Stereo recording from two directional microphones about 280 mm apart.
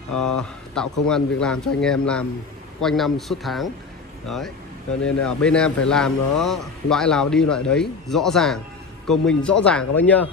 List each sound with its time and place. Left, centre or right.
0.1 s speech: left
0.4 s a man's voice: centre